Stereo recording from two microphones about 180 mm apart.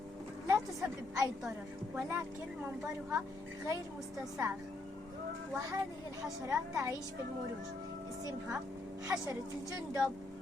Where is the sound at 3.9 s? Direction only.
Centre (ahead or behind).